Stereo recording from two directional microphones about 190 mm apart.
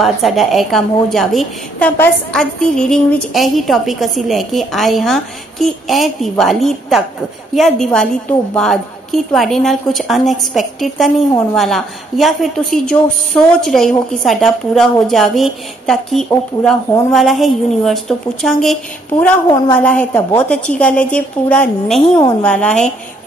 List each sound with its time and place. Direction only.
0.0 s a woman's voice: centre (ahead or behind)
19.8 s a woman's voice: 5° left (ahead or behind)